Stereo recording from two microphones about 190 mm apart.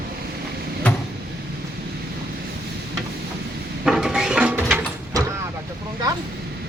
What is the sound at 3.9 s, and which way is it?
Music, 5° right (ahead or behind).